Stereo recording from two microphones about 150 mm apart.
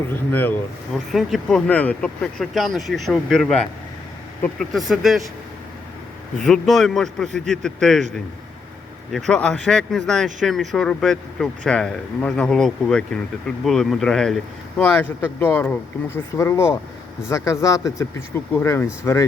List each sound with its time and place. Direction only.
0.1 s speech: 15° left (ahead or behind)
0.9 s speech: centre (ahead or behind)
6.4 s speech: centre (ahead or behind)
9.1 s speech: 5° left (ahead or behind)
14.9 s speech: 15° left (ahead or behind)